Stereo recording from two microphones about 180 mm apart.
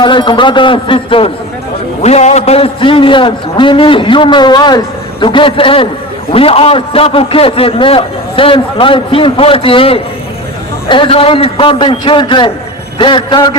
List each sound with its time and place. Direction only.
0.0 s a man's voice: 25° left (ahead or behind)